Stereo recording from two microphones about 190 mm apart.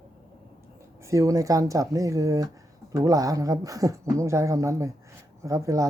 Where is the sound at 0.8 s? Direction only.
15° right (ahead or behind).